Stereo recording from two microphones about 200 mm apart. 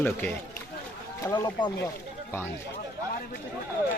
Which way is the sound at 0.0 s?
10° left (ahead or behind).